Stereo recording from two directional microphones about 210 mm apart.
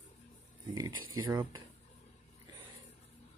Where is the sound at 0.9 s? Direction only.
80° right.